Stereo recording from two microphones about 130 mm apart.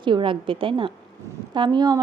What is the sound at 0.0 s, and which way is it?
A woman's voice, 40° right (ahead or behind).